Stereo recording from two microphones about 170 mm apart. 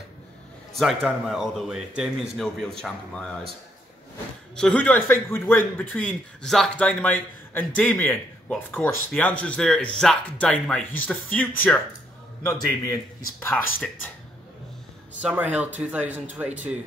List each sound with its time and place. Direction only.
0.7 s a man's voice: centre (ahead or behind)
4.6 s a man's voice: 5° left (ahead or behind)
15.2 s a man's voice: 10° right (ahead or behind)